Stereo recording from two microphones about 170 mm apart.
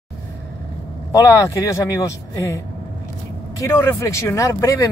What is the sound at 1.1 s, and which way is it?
Speech, 15° left (ahead or behind).